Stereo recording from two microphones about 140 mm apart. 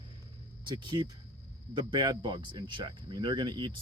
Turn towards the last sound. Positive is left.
turn(degrees=-30)  # may be behind; listen again after turning